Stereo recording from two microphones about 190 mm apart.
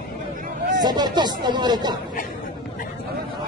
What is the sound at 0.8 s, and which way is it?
Speech, 20° right (ahead or behind).